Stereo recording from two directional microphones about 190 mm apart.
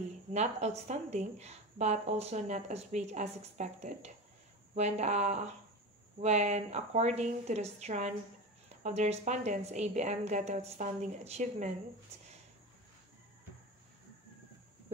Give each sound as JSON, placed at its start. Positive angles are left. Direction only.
{"t": 0.3, "sound": "a woman's voice", "side_deg": -35}